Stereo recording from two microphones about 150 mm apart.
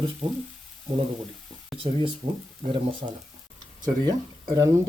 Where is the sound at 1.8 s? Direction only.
35° right (ahead or behind).